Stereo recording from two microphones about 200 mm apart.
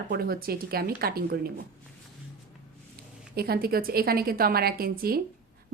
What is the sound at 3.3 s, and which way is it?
Speech, 50° right (ahead or behind).